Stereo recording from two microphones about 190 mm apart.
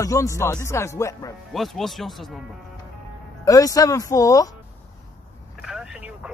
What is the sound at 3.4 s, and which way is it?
Speech, 20° left (ahead or behind).